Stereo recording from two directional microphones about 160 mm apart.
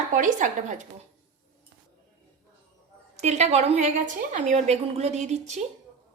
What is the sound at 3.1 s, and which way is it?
A woman's voice, 45° right (ahead or behind).